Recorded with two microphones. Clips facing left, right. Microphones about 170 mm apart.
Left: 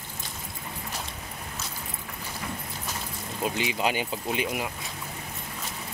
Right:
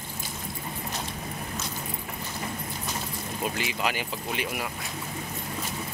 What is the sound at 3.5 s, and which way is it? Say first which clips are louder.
Speech: left 5 dB; 20° left (ahead or behind).